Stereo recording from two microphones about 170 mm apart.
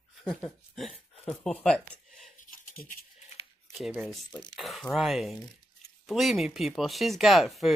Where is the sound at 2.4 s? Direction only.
55° left (ahead or behind).